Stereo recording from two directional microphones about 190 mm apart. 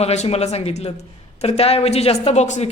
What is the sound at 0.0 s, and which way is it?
Speech, 35° left (ahead or behind).